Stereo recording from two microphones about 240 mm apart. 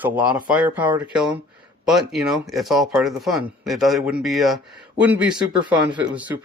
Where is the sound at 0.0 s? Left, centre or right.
Centre.